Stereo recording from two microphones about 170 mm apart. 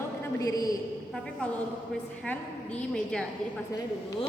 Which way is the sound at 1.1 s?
5° left (ahead or behind).